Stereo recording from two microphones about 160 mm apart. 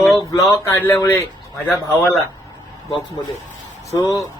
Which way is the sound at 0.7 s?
15° left (ahead or behind).